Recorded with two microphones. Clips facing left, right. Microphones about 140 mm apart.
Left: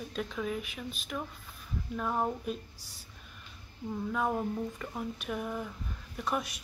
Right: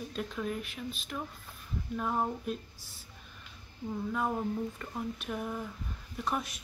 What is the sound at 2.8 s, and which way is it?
Speech, 75° left (ahead or behind).